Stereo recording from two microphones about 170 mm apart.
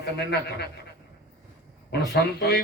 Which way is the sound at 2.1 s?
70° left (ahead or behind).